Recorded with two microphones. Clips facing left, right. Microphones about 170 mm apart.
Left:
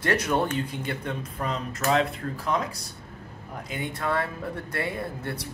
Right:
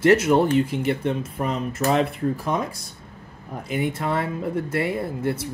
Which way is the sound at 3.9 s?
20° right (ahead or behind).